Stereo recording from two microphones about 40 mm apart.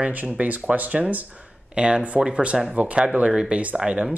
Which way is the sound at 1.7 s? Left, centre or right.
Right.